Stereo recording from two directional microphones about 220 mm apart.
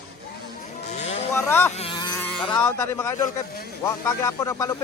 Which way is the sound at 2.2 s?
5° left (ahead or behind).